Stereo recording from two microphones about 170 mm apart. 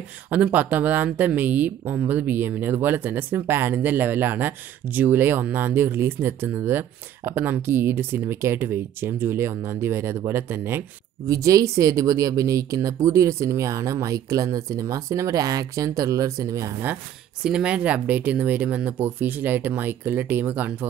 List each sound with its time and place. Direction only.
0.3 s speech: 10° right (ahead or behind)